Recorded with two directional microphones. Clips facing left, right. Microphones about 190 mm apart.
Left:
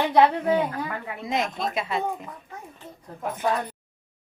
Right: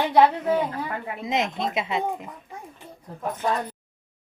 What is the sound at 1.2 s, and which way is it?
Speech, 20° right (ahead or behind).